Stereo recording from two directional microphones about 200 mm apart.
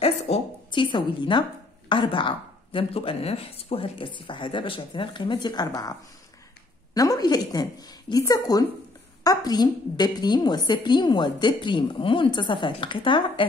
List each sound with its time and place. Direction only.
0.0 s a woman's voice: 25° left (ahead or behind)